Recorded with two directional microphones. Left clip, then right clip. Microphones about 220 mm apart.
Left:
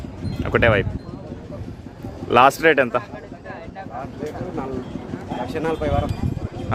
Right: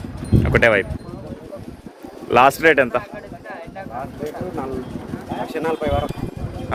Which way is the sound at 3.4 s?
30° right (ahead or behind).